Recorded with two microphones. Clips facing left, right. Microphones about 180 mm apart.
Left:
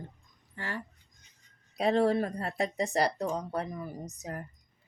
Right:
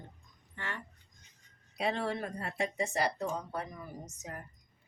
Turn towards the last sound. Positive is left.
turn(degrees=35)  # may be behind; listen again after turning